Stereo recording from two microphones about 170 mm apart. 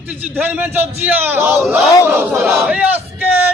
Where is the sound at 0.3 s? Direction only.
10° right (ahead or behind).